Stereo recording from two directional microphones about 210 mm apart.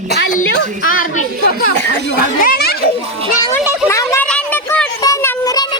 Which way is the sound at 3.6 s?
5° right (ahead or behind).